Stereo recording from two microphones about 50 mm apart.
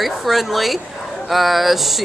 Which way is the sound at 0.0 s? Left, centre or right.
Centre.